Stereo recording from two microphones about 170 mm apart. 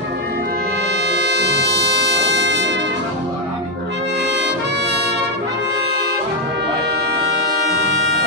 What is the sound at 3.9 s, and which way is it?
Brass instrument, 90° right.